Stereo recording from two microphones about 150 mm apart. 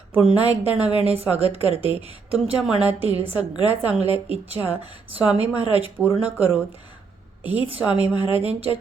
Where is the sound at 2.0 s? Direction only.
5° right (ahead or behind).